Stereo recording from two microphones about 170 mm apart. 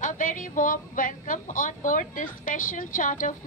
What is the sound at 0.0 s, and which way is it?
A woman's voice, 50° left (ahead or behind).